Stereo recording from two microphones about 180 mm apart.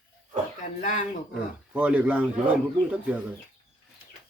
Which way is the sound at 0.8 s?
45° left (ahead or behind).